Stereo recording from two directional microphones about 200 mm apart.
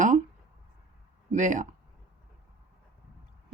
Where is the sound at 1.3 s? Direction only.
40° right (ahead or behind).